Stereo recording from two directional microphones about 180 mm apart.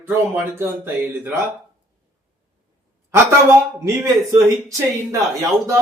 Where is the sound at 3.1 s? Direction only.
15° right (ahead or behind).